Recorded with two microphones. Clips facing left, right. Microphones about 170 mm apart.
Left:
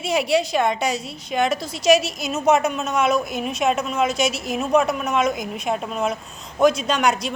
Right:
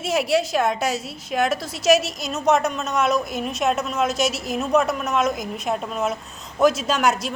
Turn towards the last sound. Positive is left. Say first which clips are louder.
# even
turn(degrees=0)  # may be behind; listen again after turning